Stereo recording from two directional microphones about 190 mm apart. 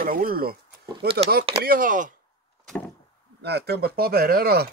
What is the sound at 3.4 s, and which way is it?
Speech, 55° right (ahead or behind).